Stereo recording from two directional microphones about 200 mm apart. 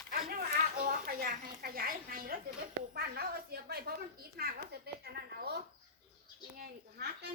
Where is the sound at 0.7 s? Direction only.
45° right (ahead or behind).